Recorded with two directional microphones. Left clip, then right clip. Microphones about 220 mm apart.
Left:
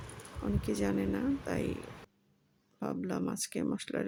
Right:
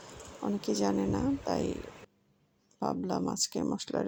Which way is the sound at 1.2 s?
5° left (ahead or behind).